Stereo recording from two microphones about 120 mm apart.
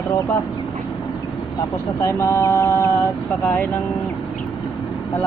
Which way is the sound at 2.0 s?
25° left (ahead or behind).